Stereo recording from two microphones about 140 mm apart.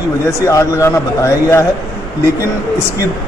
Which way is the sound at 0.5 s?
20° left (ahead or behind).